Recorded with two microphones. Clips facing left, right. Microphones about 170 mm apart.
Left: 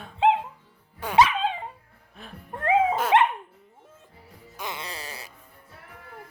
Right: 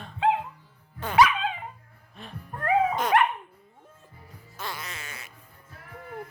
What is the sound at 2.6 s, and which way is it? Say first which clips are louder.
Music: left 2 dB; 25° left (ahead or behind).